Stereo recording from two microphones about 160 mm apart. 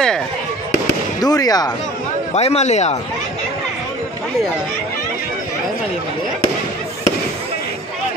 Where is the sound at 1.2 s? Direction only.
25° left (ahead or behind).